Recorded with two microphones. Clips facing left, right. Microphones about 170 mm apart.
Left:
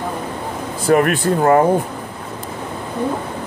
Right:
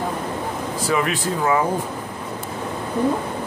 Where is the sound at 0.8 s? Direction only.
55° left (ahead or behind).